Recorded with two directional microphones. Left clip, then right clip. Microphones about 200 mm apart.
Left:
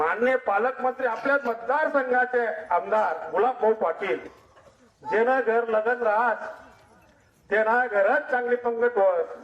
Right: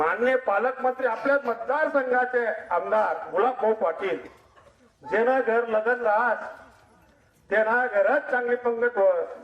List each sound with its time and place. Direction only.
0.3 s a man's voice: 20° left (ahead or behind)
5.0 s a man's voice: 20° left (ahead or behind)
7.5 s a man's voice: 20° left (ahead or behind)